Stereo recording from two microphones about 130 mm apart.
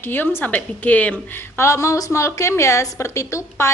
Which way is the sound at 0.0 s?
15° left (ahead or behind).